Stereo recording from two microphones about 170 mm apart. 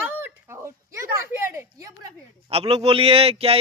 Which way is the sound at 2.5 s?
35° right (ahead or behind).